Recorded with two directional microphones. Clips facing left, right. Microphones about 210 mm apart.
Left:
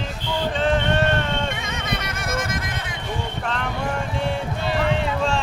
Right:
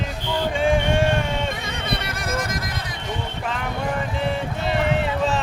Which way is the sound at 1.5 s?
35° right (ahead or behind).